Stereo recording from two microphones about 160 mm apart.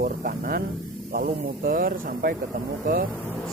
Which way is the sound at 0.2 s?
60° right (ahead or behind).